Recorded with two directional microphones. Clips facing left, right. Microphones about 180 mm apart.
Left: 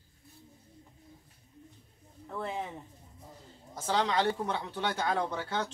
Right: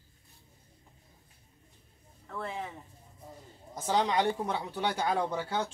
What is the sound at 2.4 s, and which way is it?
Speech, 20° left (ahead or behind).